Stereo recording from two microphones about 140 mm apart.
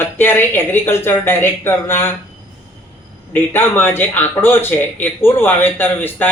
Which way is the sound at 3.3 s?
15° left (ahead or behind).